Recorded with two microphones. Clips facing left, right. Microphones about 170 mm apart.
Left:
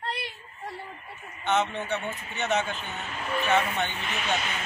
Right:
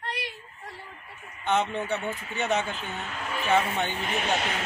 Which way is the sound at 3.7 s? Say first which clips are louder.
Right 2 dB; 35° right (ahead or behind).